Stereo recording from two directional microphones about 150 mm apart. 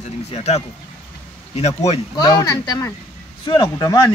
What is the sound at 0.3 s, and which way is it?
Speech, 45° left (ahead or behind).